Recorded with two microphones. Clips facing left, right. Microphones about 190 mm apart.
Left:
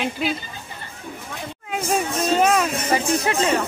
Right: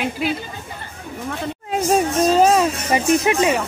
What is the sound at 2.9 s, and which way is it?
Speech, 15° right (ahead or behind).